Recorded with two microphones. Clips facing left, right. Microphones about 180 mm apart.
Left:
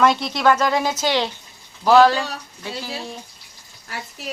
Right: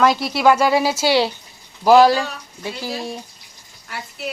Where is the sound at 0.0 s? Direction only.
5° right (ahead or behind).